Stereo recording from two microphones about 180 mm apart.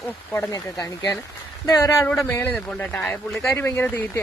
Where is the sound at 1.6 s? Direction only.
15° left (ahead or behind).